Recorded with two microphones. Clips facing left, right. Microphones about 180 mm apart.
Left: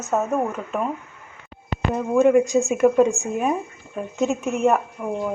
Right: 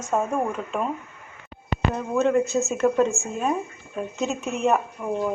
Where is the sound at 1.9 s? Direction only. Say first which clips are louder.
Left 6 dB; 10° left (ahead or behind).